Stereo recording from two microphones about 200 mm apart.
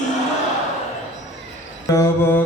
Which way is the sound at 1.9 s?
15° left (ahead or behind).